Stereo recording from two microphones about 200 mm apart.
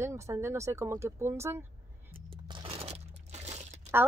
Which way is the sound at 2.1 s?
25° right (ahead or behind).